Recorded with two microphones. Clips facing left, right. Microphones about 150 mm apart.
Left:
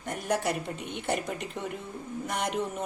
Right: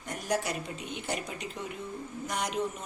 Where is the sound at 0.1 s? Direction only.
60° left (ahead or behind).